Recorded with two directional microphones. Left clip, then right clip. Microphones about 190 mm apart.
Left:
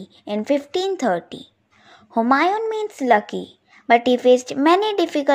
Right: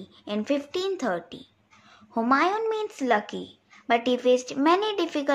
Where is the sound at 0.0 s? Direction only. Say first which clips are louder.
Left 5 dB; 30° left (ahead or behind).